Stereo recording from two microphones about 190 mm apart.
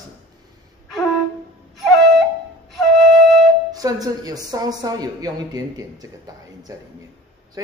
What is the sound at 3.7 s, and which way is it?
Speech, 20° right (ahead or behind).